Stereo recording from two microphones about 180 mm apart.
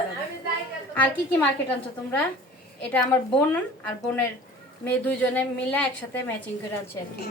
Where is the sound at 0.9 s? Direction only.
10° left (ahead or behind).